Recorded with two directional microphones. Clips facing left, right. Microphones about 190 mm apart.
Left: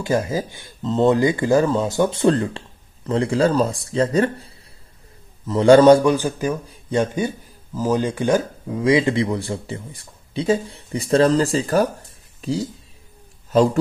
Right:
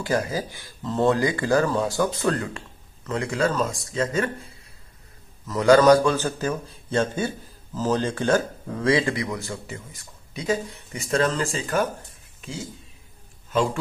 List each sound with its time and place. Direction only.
0.0 s speech: 20° left (ahead or behind)
6.1 s speech: 15° left (ahead or behind); by 12.6 s 35° left (ahead or behind)